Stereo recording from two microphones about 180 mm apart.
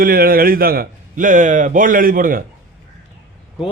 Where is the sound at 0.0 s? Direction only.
55° right (ahead or behind).